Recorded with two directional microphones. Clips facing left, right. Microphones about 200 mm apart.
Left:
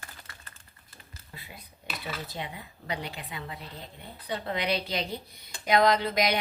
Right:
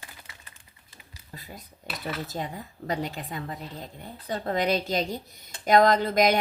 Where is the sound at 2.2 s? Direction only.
45° right (ahead or behind).